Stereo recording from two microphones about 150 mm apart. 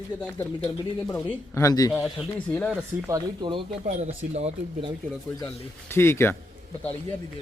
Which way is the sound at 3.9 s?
50° right (ahead or behind).